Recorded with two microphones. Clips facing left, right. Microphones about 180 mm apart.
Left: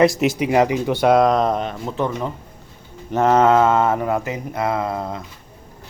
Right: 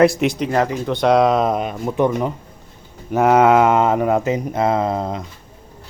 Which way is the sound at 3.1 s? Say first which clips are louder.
Right 2 dB; 10° right (ahead or behind).